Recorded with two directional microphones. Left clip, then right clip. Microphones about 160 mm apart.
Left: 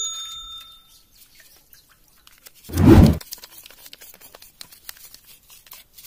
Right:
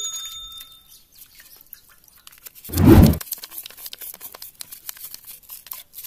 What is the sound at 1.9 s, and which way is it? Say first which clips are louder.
Chewing: right 4 dB; 40° right (ahead or behind).